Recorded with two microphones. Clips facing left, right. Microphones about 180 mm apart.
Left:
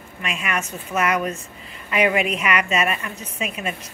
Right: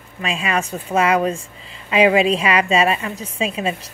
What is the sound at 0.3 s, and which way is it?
A woman's voice, 30° right (ahead or behind).